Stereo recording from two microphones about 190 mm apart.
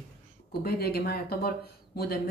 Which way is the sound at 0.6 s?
55° left (ahead or behind).